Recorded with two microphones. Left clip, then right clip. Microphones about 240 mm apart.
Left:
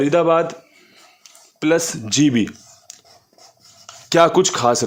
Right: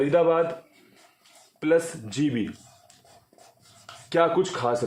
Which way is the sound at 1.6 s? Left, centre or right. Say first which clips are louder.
Left 5 dB; left.